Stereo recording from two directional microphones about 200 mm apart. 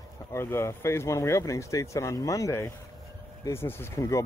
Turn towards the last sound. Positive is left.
turn(degrees=15)  # may be behind; listen again after turning